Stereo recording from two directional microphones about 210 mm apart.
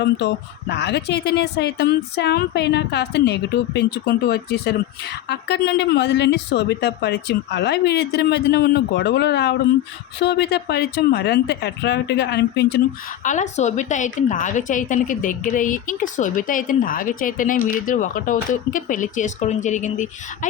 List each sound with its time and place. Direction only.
0.0 s a woman's voice: 55° left (ahead or behind)
13.2 s a woman's voice: 35° left (ahead or behind)